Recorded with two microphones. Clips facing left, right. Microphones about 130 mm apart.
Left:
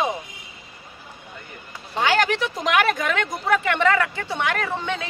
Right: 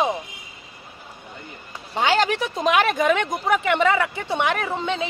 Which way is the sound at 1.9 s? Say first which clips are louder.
Right 1 dB; 15° right (ahead or behind).